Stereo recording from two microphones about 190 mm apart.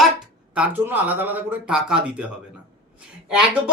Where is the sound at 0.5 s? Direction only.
10° right (ahead or behind).